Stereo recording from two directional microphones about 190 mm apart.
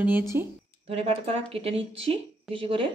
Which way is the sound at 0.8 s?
30° right (ahead or behind).